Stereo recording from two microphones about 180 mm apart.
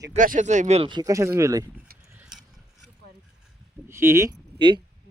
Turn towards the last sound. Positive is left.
turn(degrees=-25)  # may be behind; listen again after turning